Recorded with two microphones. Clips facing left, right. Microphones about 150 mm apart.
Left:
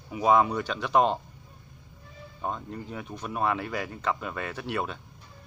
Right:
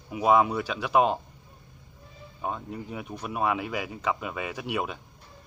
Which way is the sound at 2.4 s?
5° right (ahead or behind).